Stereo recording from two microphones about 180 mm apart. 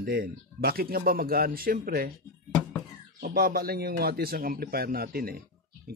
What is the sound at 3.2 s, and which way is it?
A man's voice, 55° right (ahead or behind).